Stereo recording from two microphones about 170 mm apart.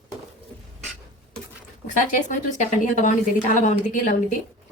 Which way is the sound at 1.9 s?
50° left (ahead or behind).